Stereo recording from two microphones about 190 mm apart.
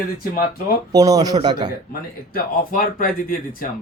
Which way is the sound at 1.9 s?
50° left (ahead or behind).